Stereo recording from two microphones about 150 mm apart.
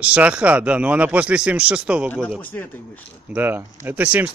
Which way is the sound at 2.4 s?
10° left (ahead or behind).